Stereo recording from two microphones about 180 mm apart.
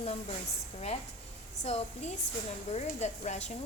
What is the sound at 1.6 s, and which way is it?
Speech, 35° left (ahead or behind).